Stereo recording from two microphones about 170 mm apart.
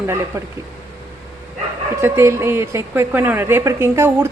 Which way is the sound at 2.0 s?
15° right (ahead or behind).